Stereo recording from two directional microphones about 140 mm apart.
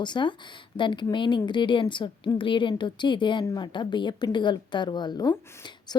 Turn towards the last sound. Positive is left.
turn(degrees=30)  # may be behind; listen again after turning